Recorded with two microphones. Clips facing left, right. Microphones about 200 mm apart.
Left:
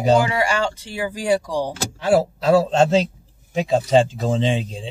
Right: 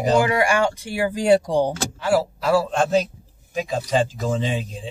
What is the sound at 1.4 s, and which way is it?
Speech, 20° right (ahead or behind).